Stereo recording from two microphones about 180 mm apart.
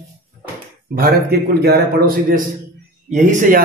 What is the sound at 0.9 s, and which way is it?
A man's voice, 55° right (ahead or behind).